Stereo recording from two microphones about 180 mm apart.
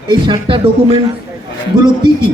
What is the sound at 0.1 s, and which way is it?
Speech, 25° right (ahead or behind).